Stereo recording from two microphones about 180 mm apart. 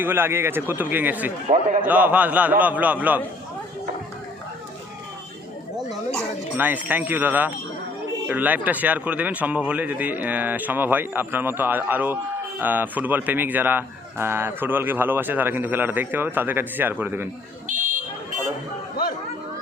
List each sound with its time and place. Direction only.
0.0 s speech: 10° right (ahead or behind)
1.5 s a man's voice: 45° right (ahead or behind)
1.9 s speech: 10° right (ahead or behind)
6.6 s speech: 10° right (ahead or behind)
17.7 s a sound: 45° right (ahead or behind)